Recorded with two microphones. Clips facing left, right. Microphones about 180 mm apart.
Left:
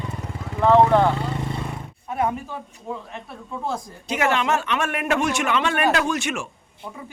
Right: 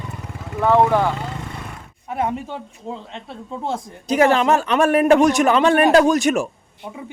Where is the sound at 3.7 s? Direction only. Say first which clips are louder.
Right 6 dB; 35° right (ahead or behind).